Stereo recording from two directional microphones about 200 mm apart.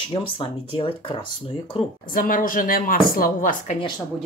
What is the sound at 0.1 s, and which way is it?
Speech, 25° left (ahead or behind).